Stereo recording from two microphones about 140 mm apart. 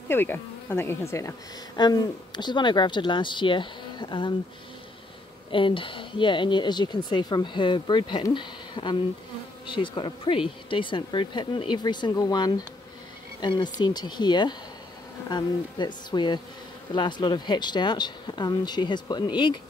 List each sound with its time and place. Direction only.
0.1 s speech: 15° left (ahead or behind)
1.8 s speech: 30° left (ahead or behind)
5.5 s speech: 35° left (ahead or behind)